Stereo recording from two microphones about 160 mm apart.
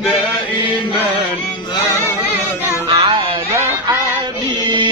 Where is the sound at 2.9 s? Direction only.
30° right (ahead or behind).